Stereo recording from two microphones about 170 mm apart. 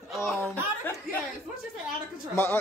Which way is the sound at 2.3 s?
15° left (ahead or behind).